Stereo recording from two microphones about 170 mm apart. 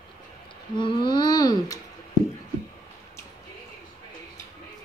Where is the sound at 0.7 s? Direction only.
30° left (ahead or behind).